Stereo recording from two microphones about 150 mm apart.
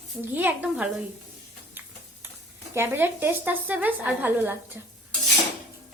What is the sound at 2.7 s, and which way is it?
Speech, 15° right (ahead or behind).